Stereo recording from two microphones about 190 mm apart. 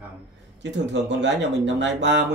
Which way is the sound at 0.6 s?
70° right (ahead or behind).